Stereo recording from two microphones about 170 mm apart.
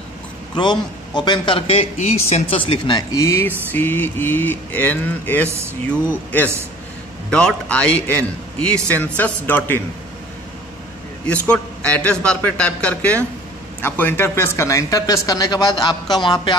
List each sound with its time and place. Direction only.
0.6 s a man's voice: 25° left (ahead or behind)
5.5 s speech: 15° right (ahead or behind)
7.2 s a man's voice: 5° left (ahead or behind)
11.2 s a man's voice: 5° left (ahead or behind); by 16.5 s 25° left (ahead or behind)